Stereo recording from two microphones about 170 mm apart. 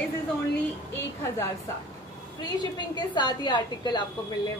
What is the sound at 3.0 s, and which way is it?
A woman's voice, 25° left (ahead or behind).